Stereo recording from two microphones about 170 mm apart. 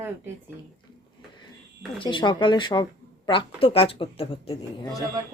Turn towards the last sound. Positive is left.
turn(degrees=25)  # may be behind; listen again after turning